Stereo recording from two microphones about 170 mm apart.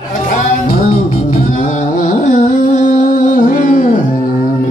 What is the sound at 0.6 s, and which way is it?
Music, 45° left (ahead or behind).